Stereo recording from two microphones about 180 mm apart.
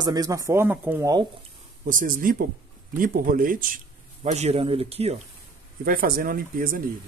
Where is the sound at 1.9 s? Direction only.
50° right (ahead or behind).